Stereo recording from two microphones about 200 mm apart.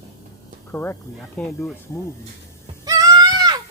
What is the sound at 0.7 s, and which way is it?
Speech, 10° left (ahead or behind).